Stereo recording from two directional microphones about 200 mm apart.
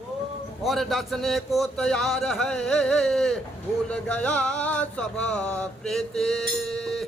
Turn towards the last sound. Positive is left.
turn(degrees=0)  # may be behind; listen again after turning